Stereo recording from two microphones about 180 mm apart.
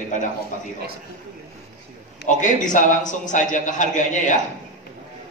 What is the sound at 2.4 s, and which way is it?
A man's voice, 45° left (ahead or behind).